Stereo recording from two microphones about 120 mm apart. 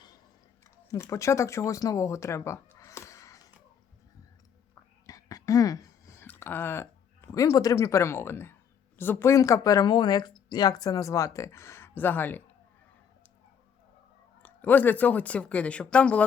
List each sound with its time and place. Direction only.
0.6 s speech: 25° left (ahead or behind)
4.7 s whispering: 30° left (ahead or behind)
9.0 s speech: 20° left (ahead or behind)
14.4 s speech: 15° left (ahead or behind)